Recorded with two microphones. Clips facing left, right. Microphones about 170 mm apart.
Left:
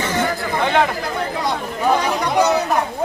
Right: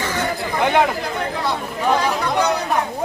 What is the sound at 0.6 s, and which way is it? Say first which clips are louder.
Speech: right 1 dB; 10° right (ahead or behind).